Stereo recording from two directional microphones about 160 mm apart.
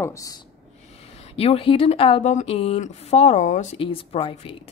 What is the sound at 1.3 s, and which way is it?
A woman's voice, 35° left (ahead or behind).